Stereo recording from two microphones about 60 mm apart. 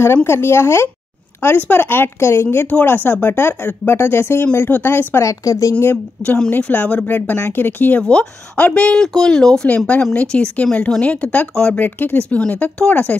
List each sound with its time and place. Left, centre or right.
0.0 s speech: left
2.4 s speech: left
5.2 s a woman's voice: left
6.5 s speech: left
7.1 s speech: left
8.0 s speech: centre
11.8 s speech: left
12.2 s speech: centre